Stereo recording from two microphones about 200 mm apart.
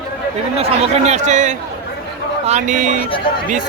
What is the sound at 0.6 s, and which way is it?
Speech, 35° right (ahead or behind).